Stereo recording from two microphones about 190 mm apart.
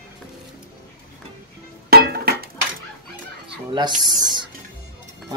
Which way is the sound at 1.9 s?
55° right (ahead or behind).